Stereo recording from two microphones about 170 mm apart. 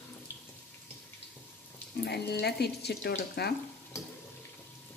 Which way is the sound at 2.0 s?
75° left (ahead or behind).